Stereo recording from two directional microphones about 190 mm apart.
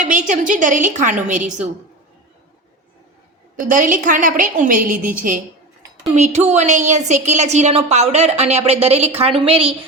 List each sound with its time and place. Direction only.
0.0 s a woman's voice: 40° right (ahead or behind)
3.6 s a woman's voice: 45° right (ahead or behind)